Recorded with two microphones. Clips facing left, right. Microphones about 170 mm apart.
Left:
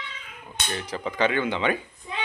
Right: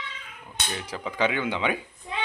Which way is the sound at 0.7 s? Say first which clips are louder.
Left 2 dB; 5° right (ahead or behind).